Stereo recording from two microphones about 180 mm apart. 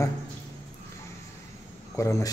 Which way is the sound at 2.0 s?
15° left (ahead or behind).